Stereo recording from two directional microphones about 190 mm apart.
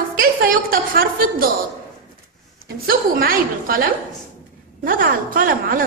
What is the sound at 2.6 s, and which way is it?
A woman's voice, 50° right (ahead or behind).